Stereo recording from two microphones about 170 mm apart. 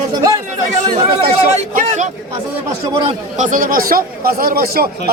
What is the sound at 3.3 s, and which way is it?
Speech, 50° right (ahead or behind).